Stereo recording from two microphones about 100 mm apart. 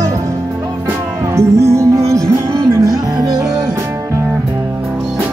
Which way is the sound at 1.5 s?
35° right (ahead or behind).